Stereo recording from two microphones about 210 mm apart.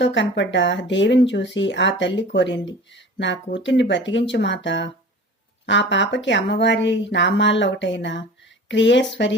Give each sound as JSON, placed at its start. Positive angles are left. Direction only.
{"t": 0.0, "sound": "speech", "side_deg": 60}